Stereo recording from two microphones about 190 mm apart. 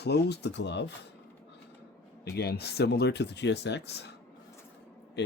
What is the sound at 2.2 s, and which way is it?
Speech, 55° left (ahead or behind).